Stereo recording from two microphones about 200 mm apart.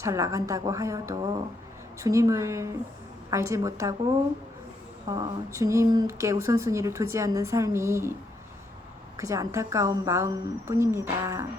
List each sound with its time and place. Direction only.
0.0 s speech: 15° right (ahead or behind)
9.1 s speech: 15° right (ahead or behind)